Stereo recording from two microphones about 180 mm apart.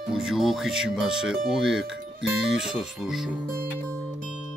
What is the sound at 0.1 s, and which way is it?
Speech, centre (ahead or behind).